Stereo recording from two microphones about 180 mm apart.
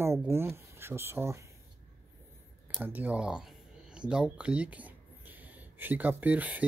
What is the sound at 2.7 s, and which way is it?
Speech, 10° right (ahead or behind).